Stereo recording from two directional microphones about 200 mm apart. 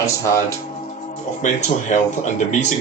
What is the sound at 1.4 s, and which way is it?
Speech, 40° left (ahead or behind).